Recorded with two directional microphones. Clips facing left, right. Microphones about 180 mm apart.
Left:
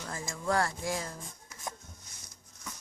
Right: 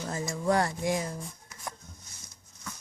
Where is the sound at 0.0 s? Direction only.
25° right (ahead or behind).